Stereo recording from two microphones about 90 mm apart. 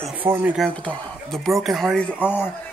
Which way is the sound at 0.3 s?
20° right (ahead or behind).